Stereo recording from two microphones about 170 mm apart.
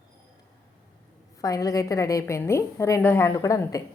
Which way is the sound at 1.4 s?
20° left (ahead or behind).